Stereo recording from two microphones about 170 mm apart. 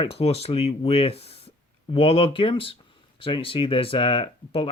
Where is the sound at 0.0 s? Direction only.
35° left (ahead or behind).